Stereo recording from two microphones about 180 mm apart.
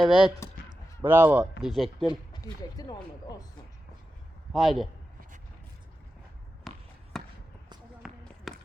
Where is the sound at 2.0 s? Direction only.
20° left (ahead or behind).